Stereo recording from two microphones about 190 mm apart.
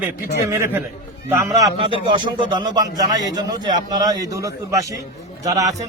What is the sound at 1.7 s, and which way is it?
A man's voice, 30° right (ahead or behind).